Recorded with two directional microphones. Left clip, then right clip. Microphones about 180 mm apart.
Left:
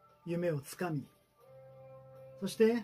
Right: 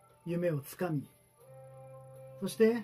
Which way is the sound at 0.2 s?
Centre (ahead or behind).